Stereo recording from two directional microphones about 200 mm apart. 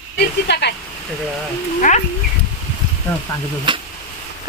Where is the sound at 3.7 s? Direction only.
25° right (ahead or behind).